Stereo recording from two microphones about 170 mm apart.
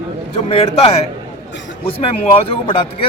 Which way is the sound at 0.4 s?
35° left (ahead or behind).